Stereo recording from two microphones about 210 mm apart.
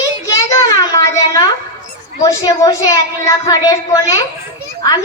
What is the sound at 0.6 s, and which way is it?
Speech, 20° left (ahead or behind).